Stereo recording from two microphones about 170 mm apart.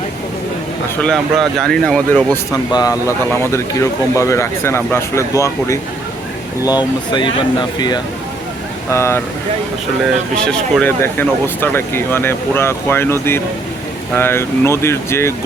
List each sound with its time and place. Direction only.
1.0 s speech: centre (ahead or behind)
2.5 s speech: 20° left (ahead or behind)
10.3 s speech: 5° left (ahead or behind)